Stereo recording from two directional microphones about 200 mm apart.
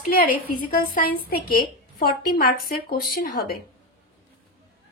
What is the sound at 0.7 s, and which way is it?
A woman's voice, 45° left (ahead or behind).